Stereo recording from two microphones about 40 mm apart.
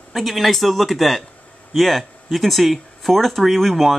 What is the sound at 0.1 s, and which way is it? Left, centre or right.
Speech, centre.